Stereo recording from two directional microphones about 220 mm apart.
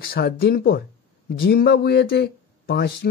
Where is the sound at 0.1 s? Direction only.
45° left (ahead or behind).